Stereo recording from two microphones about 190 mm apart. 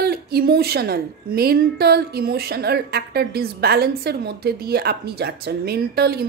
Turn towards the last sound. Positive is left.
turn(degrees=-55)  # may be behind; listen again after turning